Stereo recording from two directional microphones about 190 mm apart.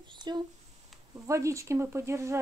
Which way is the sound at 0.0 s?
25° right (ahead or behind).